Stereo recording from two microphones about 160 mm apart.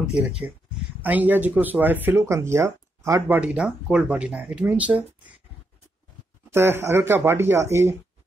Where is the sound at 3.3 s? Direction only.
5° right (ahead or behind).